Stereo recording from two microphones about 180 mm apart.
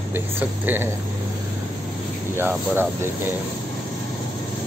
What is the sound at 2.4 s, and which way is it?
Speech, 10° right (ahead or behind).